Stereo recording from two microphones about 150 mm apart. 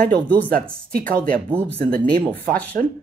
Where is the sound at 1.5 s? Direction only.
10° left (ahead or behind).